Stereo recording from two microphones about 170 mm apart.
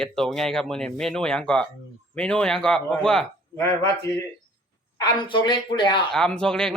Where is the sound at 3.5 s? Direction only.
15° left (ahead or behind).